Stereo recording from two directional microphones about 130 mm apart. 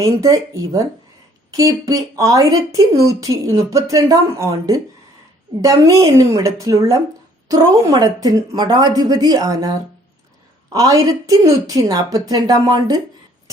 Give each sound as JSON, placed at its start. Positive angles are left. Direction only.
{"t": 0.0, "sound": "speech", "side_deg": -25}